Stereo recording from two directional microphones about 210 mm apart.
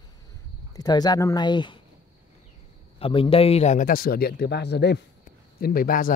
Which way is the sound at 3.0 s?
25° left (ahead or behind).